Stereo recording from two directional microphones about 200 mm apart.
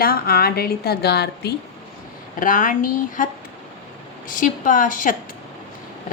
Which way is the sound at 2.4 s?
40° left (ahead or behind).